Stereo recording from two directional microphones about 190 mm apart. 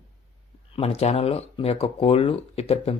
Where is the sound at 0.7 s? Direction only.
30° left (ahead or behind).